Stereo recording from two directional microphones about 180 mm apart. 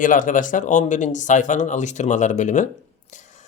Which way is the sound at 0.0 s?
45° left (ahead or behind).